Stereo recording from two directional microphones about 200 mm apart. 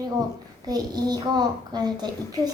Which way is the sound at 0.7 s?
20° right (ahead or behind).